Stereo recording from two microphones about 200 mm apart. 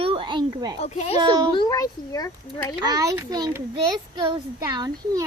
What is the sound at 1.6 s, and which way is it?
A child's voice, 20° left (ahead or behind).